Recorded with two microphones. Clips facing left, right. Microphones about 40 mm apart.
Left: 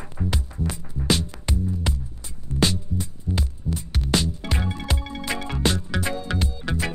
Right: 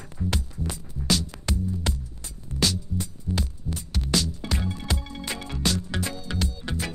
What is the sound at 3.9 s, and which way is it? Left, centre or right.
Music, left.